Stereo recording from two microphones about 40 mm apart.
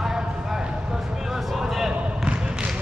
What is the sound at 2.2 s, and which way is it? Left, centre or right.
Basketball bounce, right.